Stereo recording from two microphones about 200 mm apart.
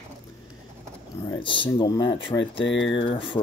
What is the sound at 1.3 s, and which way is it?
Speech, 25° left (ahead or behind).